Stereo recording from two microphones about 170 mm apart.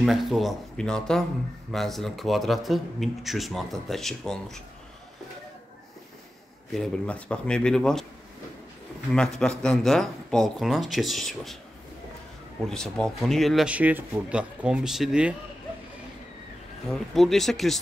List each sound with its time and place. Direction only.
0.0 s speech: centre (ahead or behind)
6.7 s speech: 5° left (ahead or behind)
9.1 s speech: 5° left (ahead or behind)
12.6 s speech: 5° left (ahead or behind)
16.9 s speech: centre (ahead or behind)